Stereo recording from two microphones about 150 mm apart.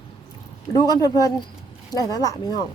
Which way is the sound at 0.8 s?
25° left (ahead or behind).